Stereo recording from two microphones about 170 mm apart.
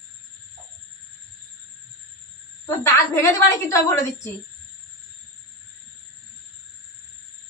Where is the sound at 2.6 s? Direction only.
15° left (ahead or behind).